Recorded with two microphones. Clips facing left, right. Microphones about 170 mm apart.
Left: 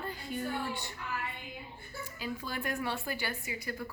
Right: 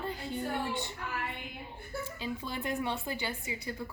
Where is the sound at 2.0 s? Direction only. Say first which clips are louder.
Right 1 dB; 25° right (ahead or behind).